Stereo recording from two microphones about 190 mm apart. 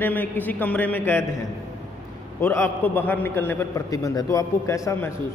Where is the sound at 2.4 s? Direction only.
10° left (ahead or behind).